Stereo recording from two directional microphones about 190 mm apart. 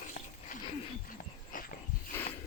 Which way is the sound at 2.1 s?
10° left (ahead or behind).